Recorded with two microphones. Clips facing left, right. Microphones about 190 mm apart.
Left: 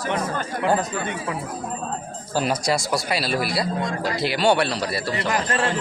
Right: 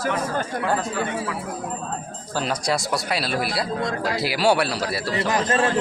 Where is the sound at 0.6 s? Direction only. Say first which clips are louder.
Left 5 dB; 20° left (ahead or behind).